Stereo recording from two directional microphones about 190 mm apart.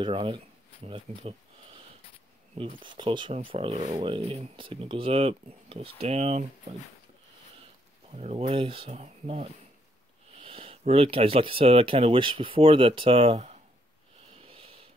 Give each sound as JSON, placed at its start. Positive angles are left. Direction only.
{"t": 0.0, "sound": "speech", "side_deg": -25}
{"t": 2.8, "sound": "speech", "side_deg": -25}
{"t": 8.1, "sound": "speech", "side_deg": -35}
{"t": 14.3, "sound": "a sound", "side_deg": -30}